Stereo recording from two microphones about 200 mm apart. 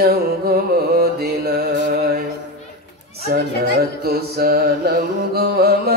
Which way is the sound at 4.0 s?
50° right (ahead or behind).